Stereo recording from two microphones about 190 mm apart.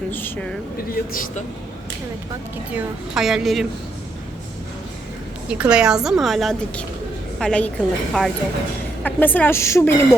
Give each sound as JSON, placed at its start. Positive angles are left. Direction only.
{"t": 0.1, "sound": "speech", "side_deg": 10}
{"t": 0.9, "sound": "speech", "side_deg": 45}
{"t": 2.7, "sound": "a woman's voice", "side_deg": 0}
{"t": 5.5, "sound": "a woman's voice", "side_deg": -5}